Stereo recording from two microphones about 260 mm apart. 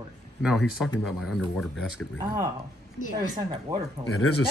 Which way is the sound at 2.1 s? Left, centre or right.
Centre.